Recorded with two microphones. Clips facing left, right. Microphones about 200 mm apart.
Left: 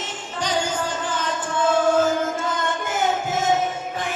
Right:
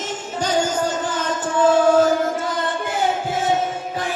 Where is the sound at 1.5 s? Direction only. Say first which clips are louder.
Right 4 dB; 40° right (ahead or behind).